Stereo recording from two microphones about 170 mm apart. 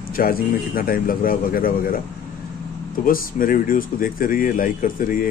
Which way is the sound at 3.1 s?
55° left (ahead or behind).